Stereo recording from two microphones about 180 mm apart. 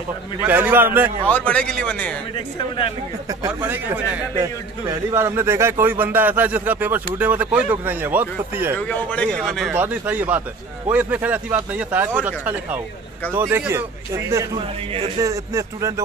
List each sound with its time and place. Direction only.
0.4 s a man's voice: 10° right (ahead or behind)
1.2 s a man's voice: 10° left (ahead or behind)
3.3 s a man's voice: 15° right (ahead or behind)
8.7 s a man's voice: 5° left (ahead or behind); by 15.9 s 20° right (ahead or behind)